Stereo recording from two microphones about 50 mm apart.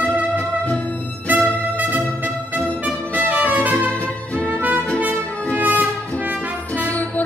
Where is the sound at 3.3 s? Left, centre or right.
Right.